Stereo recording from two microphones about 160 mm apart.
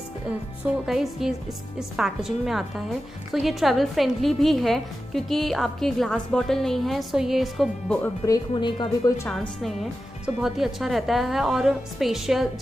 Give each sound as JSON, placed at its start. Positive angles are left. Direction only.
{"t": 0.8, "sound": "a woman's voice", "side_deg": 0}
{"t": 8.3, "sound": "speech", "side_deg": 30}
{"t": 9.3, "sound": "a woman's voice", "side_deg": 0}